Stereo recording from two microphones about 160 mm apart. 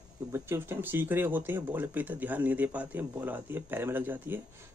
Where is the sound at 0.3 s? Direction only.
15° right (ahead or behind).